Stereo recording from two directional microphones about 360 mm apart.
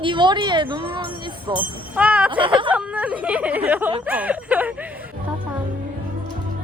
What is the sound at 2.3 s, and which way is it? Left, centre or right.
Speech, centre.